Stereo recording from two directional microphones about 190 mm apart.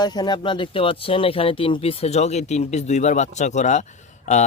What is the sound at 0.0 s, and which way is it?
Speech, 20° left (ahead or behind).